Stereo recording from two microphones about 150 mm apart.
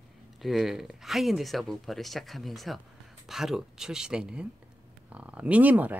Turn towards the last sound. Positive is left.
turn(degrees=-10)  # may be behind; listen again after turning